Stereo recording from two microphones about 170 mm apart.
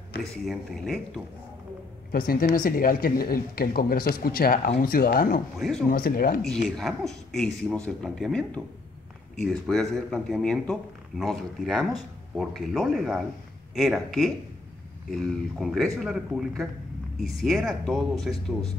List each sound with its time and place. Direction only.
0.2 s speech: centre (ahead or behind)
2.1 s speech: 60° left (ahead or behind)
6.4 s speech: centre (ahead or behind)